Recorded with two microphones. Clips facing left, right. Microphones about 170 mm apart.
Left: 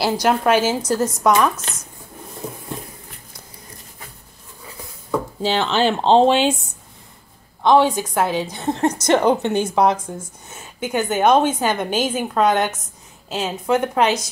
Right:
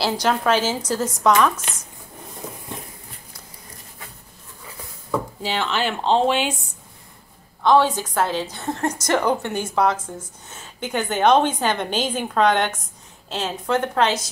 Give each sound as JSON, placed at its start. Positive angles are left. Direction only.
{"t": 0.0, "sound": "a woman's voice", "side_deg": 15}
{"t": 5.4, "sound": "speech", "side_deg": 30}
{"t": 7.6, "sound": "a woman's voice", "side_deg": 15}